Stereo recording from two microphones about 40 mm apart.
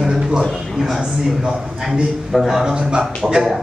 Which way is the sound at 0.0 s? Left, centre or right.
Centre.